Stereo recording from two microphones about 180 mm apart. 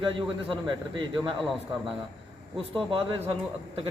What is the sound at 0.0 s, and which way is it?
A man's voice, 30° right (ahead or behind).